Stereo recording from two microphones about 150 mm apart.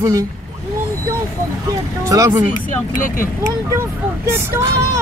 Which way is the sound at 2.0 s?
20° right (ahead or behind).